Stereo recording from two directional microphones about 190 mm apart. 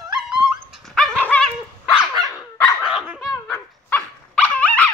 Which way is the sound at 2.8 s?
5° right (ahead or behind).